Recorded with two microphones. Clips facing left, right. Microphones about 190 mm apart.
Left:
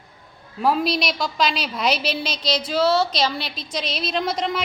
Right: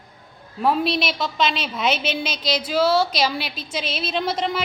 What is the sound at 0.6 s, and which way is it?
A woman's voice, centre (ahead or behind).